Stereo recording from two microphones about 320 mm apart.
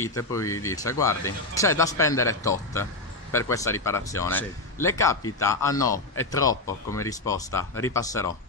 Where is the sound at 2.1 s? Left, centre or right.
Left.